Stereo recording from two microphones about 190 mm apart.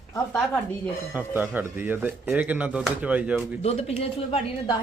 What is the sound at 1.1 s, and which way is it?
A man's voice, 10° right (ahead or behind).